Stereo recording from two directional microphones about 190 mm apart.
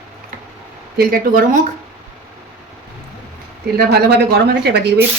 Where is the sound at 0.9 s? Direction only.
50° right (ahead or behind).